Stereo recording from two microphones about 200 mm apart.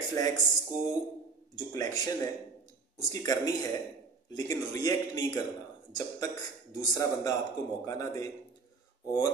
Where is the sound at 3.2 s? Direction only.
15° left (ahead or behind).